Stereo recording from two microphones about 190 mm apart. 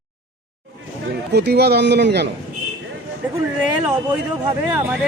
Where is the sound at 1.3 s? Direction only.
60° right (ahead or behind).